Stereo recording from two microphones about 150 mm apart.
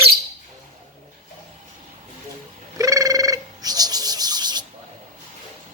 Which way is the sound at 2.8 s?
25° right (ahead or behind).